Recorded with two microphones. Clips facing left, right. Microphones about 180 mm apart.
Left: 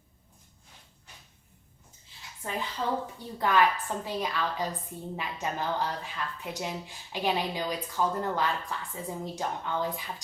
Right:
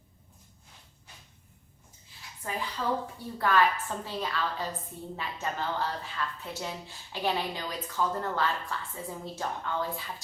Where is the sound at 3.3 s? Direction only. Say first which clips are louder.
Left 1 dB; 20° left (ahead or behind).